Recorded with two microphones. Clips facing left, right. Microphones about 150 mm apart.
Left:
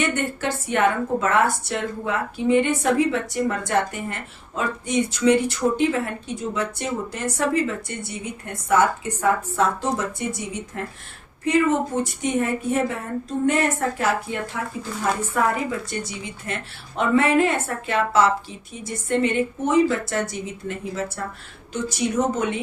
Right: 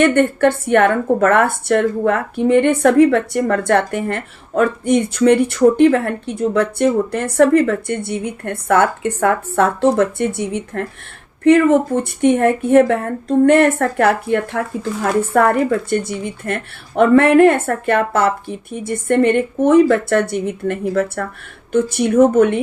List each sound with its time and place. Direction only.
0.0 s a woman's voice: 60° right (ahead or behind)